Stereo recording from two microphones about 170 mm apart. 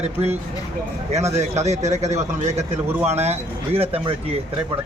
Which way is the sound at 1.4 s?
40° right (ahead or behind).